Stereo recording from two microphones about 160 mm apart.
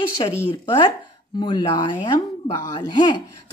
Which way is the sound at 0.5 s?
30° left (ahead or behind).